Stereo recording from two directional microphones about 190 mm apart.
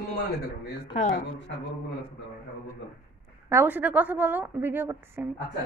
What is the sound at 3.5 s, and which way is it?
A woman's voice, 10° right (ahead or behind).